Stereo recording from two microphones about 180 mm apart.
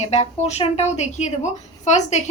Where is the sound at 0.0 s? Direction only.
40° left (ahead or behind).